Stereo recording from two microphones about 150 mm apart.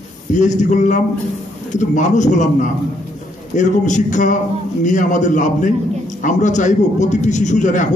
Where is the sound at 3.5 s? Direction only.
55° left (ahead or behind).